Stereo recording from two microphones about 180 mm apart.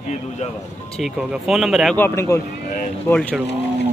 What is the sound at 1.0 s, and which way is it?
Speech, centre (ahead or behind).